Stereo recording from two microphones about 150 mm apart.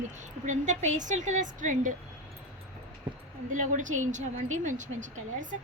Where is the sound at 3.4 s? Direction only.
60° right (ahead or behind).